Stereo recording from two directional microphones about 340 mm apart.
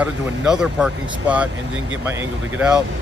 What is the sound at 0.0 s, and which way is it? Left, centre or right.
Speech, centre.